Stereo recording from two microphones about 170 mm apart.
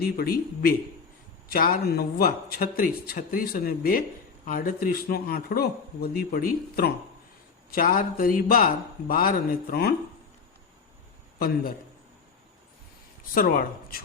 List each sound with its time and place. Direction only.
0.2 s a man's voice: 60° left (ahead or behind)
11.3 s a man's voice: 60° left (ahead or behind)
13.3 s a man's voice: 55° left (ahead or behind)